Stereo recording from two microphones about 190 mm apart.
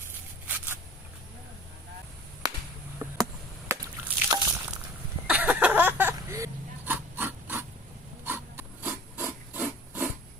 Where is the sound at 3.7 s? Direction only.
15° right (ahead or behind).